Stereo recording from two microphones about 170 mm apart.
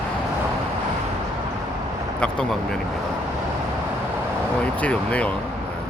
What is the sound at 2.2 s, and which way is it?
Speech, 5° left (ahead or behind).